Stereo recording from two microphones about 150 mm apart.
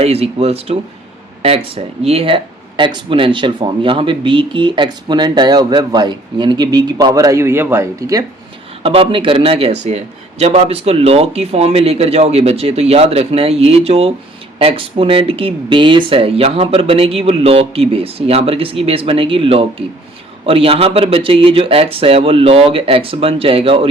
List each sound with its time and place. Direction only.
0.0 s a man's voice: 45° right (ahead or behind); by 8.2 s 20° right (ahead or behind)
8.8 s a man's voice: 40° right (ahead or behind)